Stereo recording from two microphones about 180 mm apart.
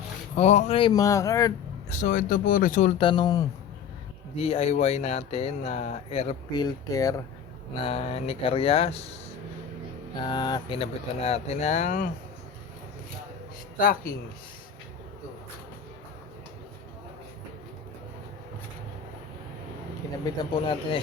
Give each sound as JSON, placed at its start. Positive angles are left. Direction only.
{"t": 0.3, "sound": "speech", "side_deg": 35}
{"t": 1.9, "sound": "speech", "side_deg": 45}
{"t": 3.0, "sound": "speech", "side_deg": 25}
{"t": 4.4, "sound": "speech", "side_deg": 35}
{"t": 7.7, "sound": "speech", "side_deg": 30}
{"t": 10.2, "sound": "speech", "side_deg": 25}
{"t": 13.7, "sound": "speech", "side_deg": 50}
{"t": 20.2, "sound": "speech", "side_deg": 25}